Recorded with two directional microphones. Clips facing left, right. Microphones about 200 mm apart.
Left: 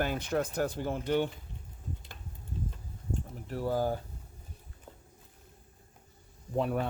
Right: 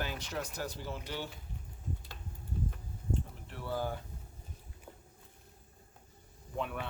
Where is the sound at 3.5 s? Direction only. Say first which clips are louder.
Left 7 dB; 40° left (ahead or behind).